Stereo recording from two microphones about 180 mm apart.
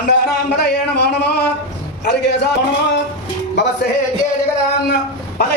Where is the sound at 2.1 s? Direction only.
65° left (ahead or behind).